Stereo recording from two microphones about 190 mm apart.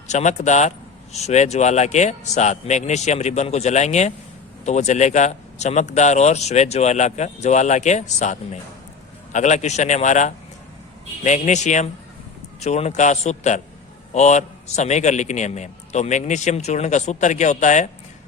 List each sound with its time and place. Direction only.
0.1 s a man's voice: 40° left (ahead or behind)